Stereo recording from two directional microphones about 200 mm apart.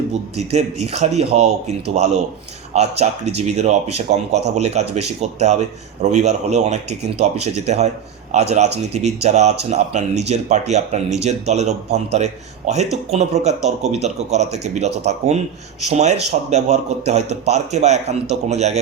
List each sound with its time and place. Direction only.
0.5 s speech: 35° right (ahead or behind)